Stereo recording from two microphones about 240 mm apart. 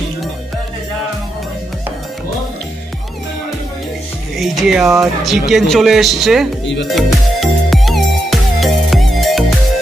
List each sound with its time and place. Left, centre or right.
4.4 s speech: centre
6.6 s speech: left
6.9 s music: centre